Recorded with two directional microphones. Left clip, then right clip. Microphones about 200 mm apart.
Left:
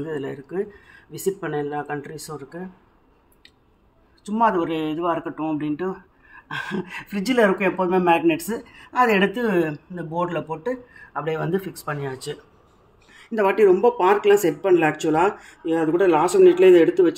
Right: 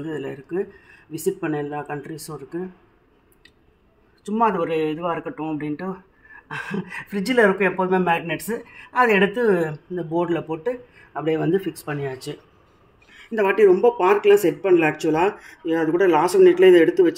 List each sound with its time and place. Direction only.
0.0 s speech: 15° right (ahead or behind)
4.2 s speech: 25° right (ahead or behind)
13.1 s speech: centre (ahead or behind)